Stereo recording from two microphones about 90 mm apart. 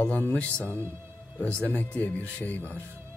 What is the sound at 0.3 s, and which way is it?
Speech, 15° left (ahead or behind).